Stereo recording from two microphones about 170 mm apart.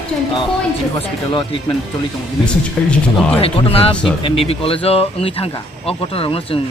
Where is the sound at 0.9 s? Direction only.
30° left (ahead or behind).